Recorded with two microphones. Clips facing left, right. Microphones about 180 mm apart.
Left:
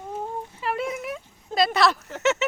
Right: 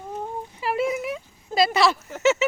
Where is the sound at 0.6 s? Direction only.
5° right (ahead or behind).